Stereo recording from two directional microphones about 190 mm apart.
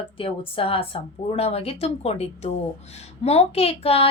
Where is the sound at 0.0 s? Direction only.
30° left (ahead or behind).